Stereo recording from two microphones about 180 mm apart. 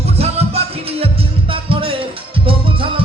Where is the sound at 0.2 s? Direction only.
35° right (ahead or behind).